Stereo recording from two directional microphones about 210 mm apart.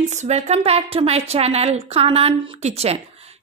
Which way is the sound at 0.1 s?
30° right (ahead or behind).